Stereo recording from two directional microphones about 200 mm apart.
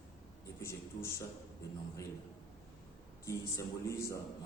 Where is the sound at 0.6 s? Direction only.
15° left (ahead or behind).